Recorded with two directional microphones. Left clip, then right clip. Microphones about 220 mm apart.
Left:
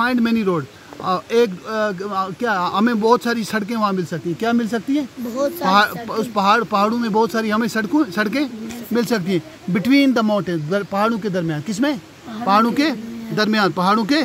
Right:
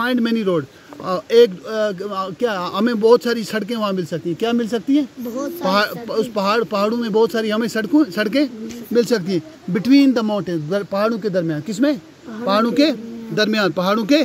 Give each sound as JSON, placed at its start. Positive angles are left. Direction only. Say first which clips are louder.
{"t": 0.0, "sound": "speech", "louder": "left 1 dB", "side_deg": -10}
{"t": 5.3, "sound": "speech", "louder": "left 6 dB", "side_deg": 30}
{"t": 5.7, "sound": "a man's voice", "louder": "left 2 dB", "side_deg": -5}